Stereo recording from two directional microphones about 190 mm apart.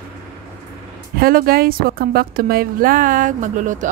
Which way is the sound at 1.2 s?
50° right (ahead or behind).